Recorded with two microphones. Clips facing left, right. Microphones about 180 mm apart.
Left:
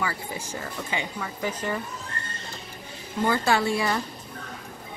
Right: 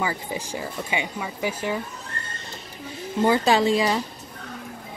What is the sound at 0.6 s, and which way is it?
A woman's voice, 15° right (ahead or behind).